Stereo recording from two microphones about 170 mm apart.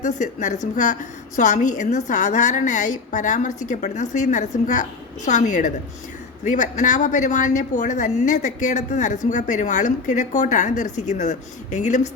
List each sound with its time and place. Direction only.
0.0 s a woman's voice: 45° left (ahead or behind)